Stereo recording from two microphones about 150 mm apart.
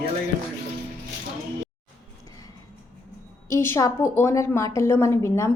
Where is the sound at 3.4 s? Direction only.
15° left (ahead or behind).